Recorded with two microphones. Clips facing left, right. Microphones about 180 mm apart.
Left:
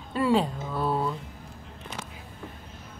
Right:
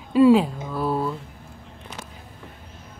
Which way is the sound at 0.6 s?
Centre (ahead or behind).